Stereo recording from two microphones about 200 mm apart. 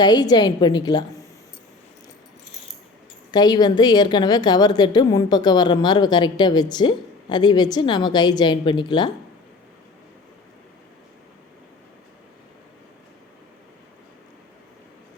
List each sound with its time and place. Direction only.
0.0 s a woman's voice: 20° left (ahead or behind)
3.3 s a woman's voice: 20° left (ahead or behind)